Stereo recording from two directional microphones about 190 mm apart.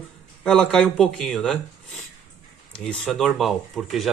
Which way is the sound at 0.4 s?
5° left (ahead or behind).